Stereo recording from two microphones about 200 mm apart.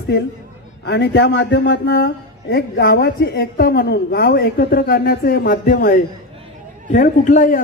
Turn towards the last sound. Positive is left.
turn(degrees=40)  # may be behind; listen again after turning